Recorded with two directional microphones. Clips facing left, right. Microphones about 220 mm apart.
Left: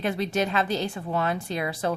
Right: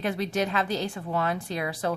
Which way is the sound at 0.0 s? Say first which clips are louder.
Left 1 dB; 25° left (ahead or behind).